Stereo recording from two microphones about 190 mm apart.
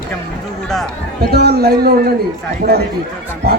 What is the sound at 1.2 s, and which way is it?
Speech, 55° right (ahead or behind).